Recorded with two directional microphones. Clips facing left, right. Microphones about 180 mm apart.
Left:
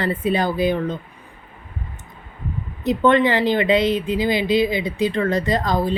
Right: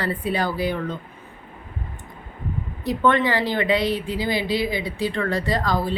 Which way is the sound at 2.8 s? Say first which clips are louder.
Left 4 dB; 20° left (ahead or behind).